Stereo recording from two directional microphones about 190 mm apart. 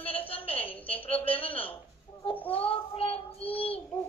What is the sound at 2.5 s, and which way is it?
Child singing, 30° left (ahead or behind).